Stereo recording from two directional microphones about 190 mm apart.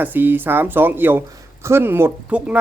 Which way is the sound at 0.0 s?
10° right (ahead or behind).